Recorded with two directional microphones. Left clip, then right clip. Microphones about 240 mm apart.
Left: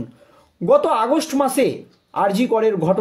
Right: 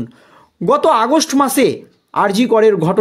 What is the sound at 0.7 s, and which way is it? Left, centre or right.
Speech, right.